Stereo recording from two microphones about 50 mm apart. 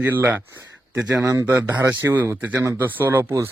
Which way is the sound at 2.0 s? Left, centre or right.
Right.